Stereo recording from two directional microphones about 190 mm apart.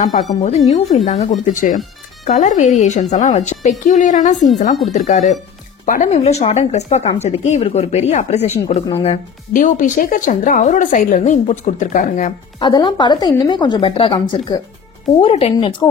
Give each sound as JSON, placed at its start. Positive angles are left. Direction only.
{"t": 0.7, "sound": "speech", "side_deg": 35}
{"t": 12.5, "sound": "a woman's voice", "side_deg": 25}